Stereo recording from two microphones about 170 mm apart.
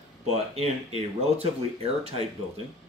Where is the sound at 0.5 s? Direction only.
35° right (ahead or behind).